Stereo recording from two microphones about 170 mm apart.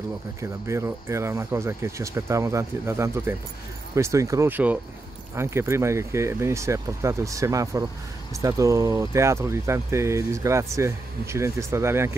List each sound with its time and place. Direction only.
0.4 s speech: 15° right (ahead or behind)